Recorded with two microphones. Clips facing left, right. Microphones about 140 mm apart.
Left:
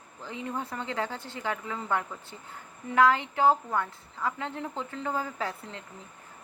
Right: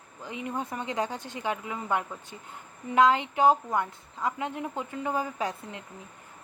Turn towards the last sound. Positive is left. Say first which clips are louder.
# right 2 dB
turn(degrees=-15)  # may be behind; listen again after turning